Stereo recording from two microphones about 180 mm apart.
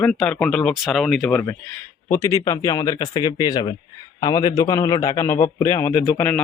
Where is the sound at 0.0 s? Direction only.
5° left (ahead or behind).